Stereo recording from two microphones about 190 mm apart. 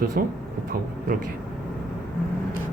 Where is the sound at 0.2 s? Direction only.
50° right (ahead or behind).